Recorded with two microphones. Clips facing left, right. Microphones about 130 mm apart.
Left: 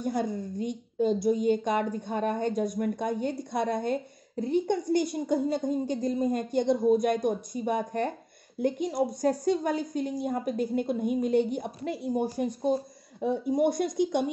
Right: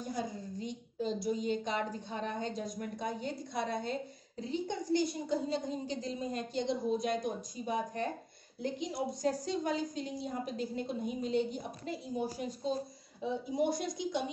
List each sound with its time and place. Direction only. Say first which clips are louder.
0.0 s a woman's voice: left 8 dB; 60° left (ahead or behind)